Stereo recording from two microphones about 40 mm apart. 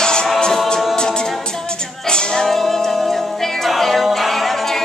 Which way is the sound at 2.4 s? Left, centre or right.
Centre.